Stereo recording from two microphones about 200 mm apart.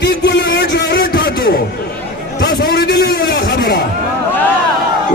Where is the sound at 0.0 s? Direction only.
55° left (ahead or behind).